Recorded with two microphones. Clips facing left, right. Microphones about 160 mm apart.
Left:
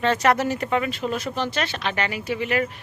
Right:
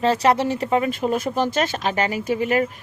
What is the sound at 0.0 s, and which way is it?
Speech, 35° right (ahead or behind).